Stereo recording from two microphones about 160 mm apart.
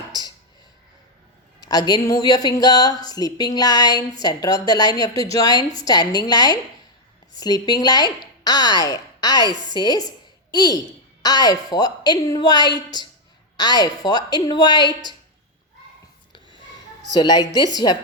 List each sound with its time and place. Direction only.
1.6 s a woman's voice: 25° left (ahead or behind)
17.2 s a woman's voice: 25° left (ahead or behind)